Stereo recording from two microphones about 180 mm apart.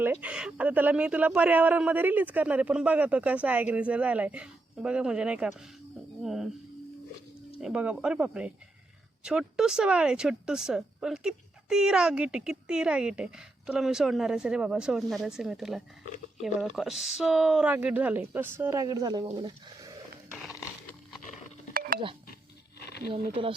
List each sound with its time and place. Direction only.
0.0 s speech: 10° right (ahead or behind)
7.6 s speech: 5° right (ahead or behind); by 19.9 s 25° right (ahead or behind)
21.7 s a sound: 55° right (ahead or behind)
23.1 s speech: 30° right (ahead or behind)